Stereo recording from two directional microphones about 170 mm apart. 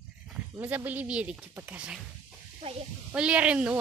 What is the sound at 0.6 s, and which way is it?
Speech, 10° right (ahead or behind).